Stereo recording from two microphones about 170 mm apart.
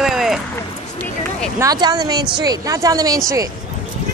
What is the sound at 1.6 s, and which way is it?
Speech, 20° right (ahead or behind).